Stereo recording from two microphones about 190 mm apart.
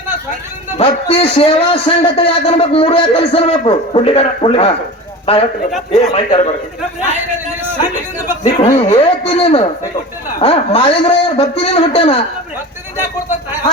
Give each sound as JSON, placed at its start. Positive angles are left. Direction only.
{"t": 0.8, "sound": "a man's voice", "side_deg": 30}
{"t": 8.6, "sound": "a man's voice", "side_deg": 30}